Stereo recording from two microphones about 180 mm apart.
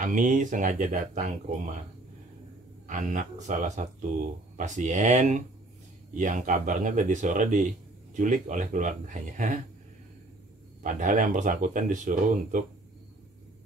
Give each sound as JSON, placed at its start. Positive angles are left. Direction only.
{"t": 0.0, "sound": "speech", "side_deg": -45}
{"t": 2.9, "sound": "speech", "side_deg": -45}
{"t": 10.8, "sound": "speech", "side_deg": -45}